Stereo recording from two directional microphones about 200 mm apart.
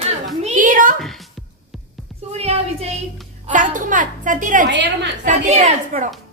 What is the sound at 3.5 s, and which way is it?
A woman's voice, 40° right (ahead or behind).